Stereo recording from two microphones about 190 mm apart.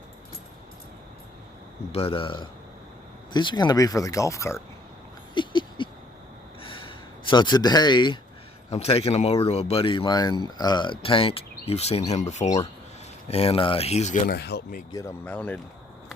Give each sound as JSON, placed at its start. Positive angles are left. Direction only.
{"t": 1.9, "sound": "a man's voice", "side_deg": 30}
{"t": 5.3, "sound": "a sound", "side_deg": 25}
{"t": 8.7, "sound": "speech", "side_deg": 30}
{"t": 14.3, "sound": "speech", "side_deg": 60}
{"t": 14.9, "sound": "speech", "side_deg": 10}